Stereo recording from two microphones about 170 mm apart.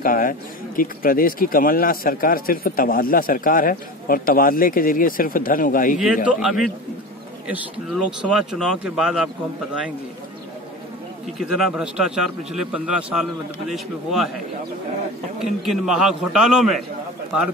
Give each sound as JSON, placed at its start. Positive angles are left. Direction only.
{"t": 0.0, "sound": "speech", "side_deg": 55}
{"t": 6.2, "sound": "speech", "side_deg": -5}
{"t": 11.3, "sound": "speech", "side_deg": 0}
{"t": 15.3, "sound": "speech", "side_deg": 0}